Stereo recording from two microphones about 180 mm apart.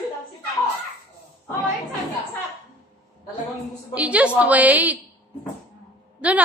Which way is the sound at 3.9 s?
5° right (ahead or behind).